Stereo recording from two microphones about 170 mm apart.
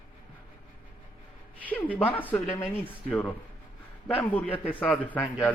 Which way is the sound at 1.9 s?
10° left (ahead or behind).